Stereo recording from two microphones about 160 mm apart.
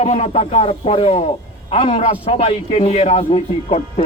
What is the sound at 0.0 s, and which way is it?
Speech, 40° left (ahead or behind).